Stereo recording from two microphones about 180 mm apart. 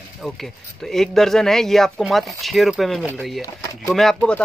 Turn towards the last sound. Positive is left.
turn(degrees=5)  # may be behind; listen again after turning